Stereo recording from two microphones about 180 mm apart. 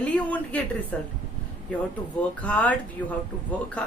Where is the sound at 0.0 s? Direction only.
10° left (ahead or behind).